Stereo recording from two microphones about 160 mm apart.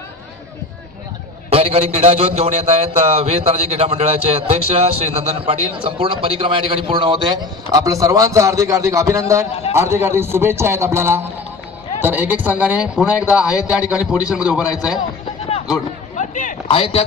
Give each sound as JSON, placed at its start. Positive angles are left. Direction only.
{"t": 1.5, "sound": "a man's voice", "side_deg": -40}
{"t": 16.2, "sound": "a sound", "side_deg": 50}
{"t": 16.6, "sound": "a man's voice", "side_deg": 35}